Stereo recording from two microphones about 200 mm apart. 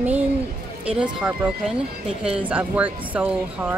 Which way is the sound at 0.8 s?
5° right (ahead or behind).